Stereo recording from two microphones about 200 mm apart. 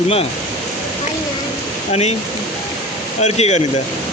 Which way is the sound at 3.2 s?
35° left (ahead or behind).